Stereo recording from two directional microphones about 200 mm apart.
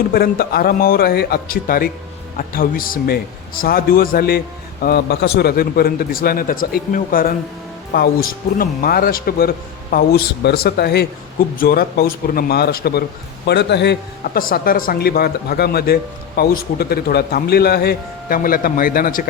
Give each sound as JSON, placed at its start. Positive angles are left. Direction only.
{"t": 0.1, "sound": "a man's voice", "side_deg": 50}